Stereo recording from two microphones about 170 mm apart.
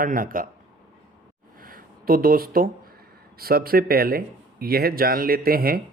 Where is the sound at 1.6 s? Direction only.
55° right (ahead or behind).